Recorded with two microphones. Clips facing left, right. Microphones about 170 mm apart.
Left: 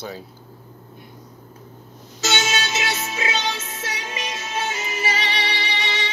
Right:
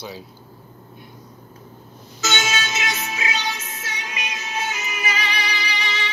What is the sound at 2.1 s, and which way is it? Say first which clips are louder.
Music: left 1 dB; 35° left (ahead or behind).